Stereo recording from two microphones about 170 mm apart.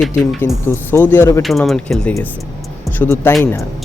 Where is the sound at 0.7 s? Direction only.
15° left (ahead or behind).